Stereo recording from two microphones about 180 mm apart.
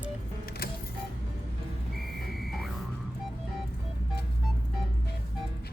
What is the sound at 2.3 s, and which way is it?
Music, centre (ahead or behind).